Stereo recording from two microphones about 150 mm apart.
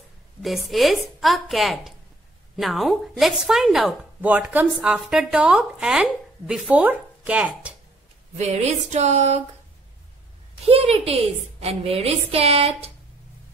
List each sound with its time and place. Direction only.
0.4 s speech: centre (ahead or behind)
8.4 s a sound: 50° right (ahead or behind)
10.6 s a woman's voice: 40° right (ahead or behind)